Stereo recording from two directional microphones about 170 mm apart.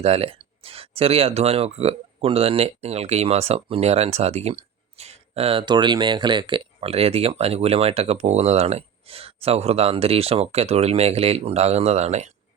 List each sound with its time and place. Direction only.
0.0 s speech: 35° right (ahead or behind)